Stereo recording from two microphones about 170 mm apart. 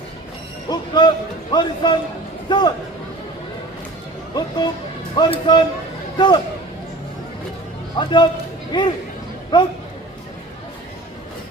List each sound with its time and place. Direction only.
0.7 s speech: 25° left (ahead or behind)
4.4 s speech: 25° left (ahead or behind)
7.9 s speech: 25° left (ahead or behind)